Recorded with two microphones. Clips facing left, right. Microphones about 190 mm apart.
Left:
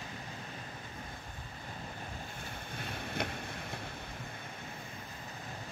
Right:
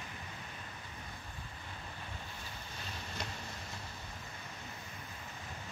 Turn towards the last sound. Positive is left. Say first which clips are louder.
# left 4 dB
turn(degrees=55)  # may be behind; listen again after turning